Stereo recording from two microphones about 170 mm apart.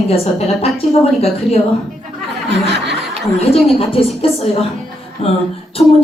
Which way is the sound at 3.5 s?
35° left (ahead or behind).